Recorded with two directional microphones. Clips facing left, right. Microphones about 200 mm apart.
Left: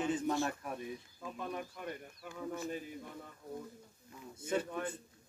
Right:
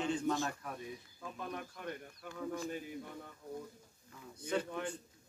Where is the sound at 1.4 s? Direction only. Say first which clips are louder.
Left 2 dB; 5° left (ahead or behind).